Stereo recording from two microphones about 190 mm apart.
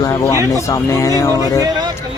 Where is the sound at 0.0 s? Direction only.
15° left (ahead or behind).